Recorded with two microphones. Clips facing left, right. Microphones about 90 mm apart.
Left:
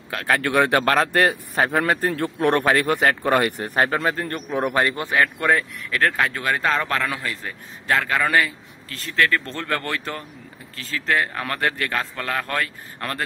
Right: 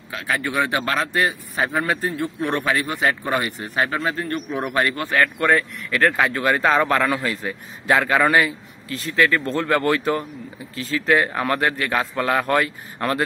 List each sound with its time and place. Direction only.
0.1 s a man's voice: 60° left (ahead or behind); by 5.0 s 30° left (ahead or behind)
5.0 s a man's voice: 10° left (ahead or behind); by 13.2 s 10° right (ahead or behind)